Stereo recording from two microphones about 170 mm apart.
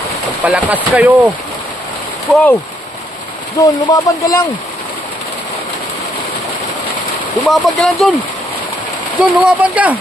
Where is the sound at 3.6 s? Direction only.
20° left (ahead or behind).